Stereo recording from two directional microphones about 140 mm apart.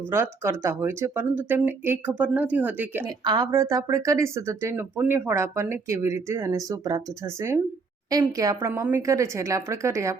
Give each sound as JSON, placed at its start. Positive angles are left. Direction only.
{"t": 0.1, "sound": "speech", "side_deg": -20}
{"t": 3.1, "sound": "a woman's voice", "side_deg": -30}